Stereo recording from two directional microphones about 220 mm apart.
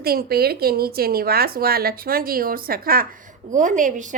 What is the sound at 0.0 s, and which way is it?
A woman's voice, 45° right (ahead or behind).